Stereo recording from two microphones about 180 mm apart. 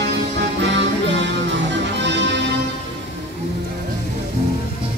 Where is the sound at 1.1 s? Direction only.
80° right.